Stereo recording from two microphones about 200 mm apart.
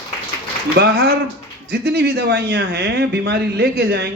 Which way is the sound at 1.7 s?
55° right (ahead or behind).